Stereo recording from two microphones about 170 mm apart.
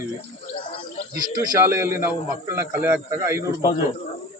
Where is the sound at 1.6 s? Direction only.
15° right (ahead or behind).